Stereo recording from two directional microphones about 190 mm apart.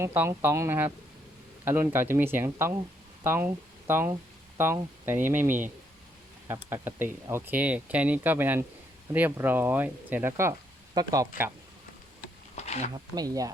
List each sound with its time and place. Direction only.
0.0 s speech: 10° right (ahead or behind)
12.5 s a sound: 35° left (ahead or behind)
12.9 s speech: 20° right (ahead or behind)